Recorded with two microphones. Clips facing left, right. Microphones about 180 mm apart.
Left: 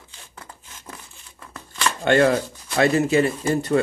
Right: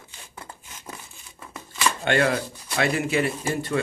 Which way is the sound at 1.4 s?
5° right (ahead or behind).